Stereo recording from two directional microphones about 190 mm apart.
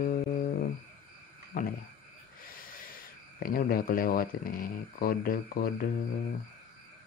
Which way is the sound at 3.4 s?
50° left (ahead or behind).